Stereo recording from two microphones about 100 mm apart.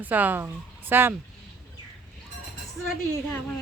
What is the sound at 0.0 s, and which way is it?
Speech, 15° right (ahead or behind).